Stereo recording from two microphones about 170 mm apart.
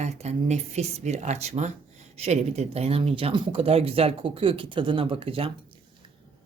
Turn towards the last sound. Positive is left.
turn(degrees=-30)  # may be behind; listen again after turning